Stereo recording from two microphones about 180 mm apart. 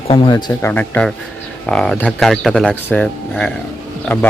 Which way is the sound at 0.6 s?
10° left (ahead or behind).